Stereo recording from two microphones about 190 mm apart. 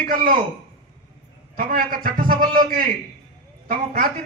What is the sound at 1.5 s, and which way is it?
A man's voice, 50° right (ahead or behind).